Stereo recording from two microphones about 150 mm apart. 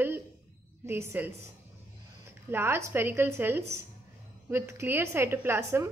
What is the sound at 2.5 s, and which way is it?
A woman's voice, 15° right (ahead or behind).